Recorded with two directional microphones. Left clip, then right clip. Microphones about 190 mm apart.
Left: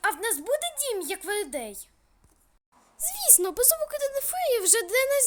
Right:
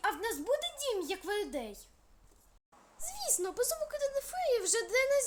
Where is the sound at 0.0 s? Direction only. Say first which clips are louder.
Left 6 dB; 55° left (ahead or behind).